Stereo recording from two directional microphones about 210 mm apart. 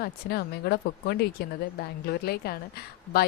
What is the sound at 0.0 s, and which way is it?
A woman's voice, 50° left (ahead or behind).